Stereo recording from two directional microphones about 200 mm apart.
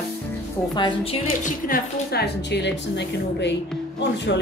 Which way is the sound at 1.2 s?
45° left (ahead or behind).